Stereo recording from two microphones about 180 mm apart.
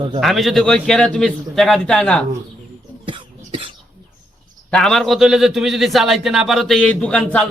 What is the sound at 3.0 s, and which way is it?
Cough, 30° right (ahead or behind).